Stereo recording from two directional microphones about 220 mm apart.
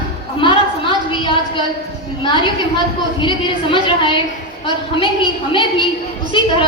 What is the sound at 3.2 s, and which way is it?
Speech, 20° left (ahead or behind).